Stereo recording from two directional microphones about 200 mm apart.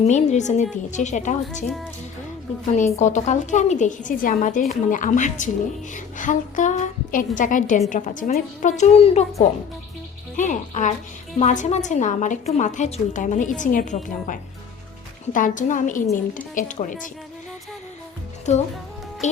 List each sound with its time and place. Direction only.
0.0 s a woman's voice: 35° left (ahead or behind)
2.7 s a woman's voice: 35° left (ahead or behind)
10.3 s a woman's voice: 40° left (ahead or behind)
18.5 s a woman's voice: 35° left (ahead or behind)